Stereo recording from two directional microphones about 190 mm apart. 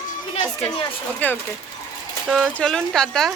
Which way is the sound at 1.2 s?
10° left (ahead or behind).